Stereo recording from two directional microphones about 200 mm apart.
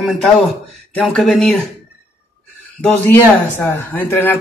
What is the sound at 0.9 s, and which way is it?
Speech, 5° left (ahead or behind).